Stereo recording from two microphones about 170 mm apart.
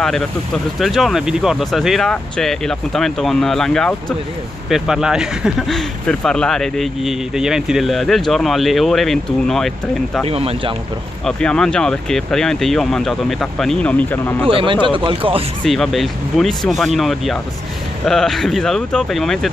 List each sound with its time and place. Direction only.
0.0 s speech: centre (ahead or behind)
10.2 s speech: 35° right (ahead or behind)
11.2 s speech: 5° left (ahead or behind)
14.5 s speech: 30° right (ahead or behind)
15.6 s speech: centre (ahead or behind)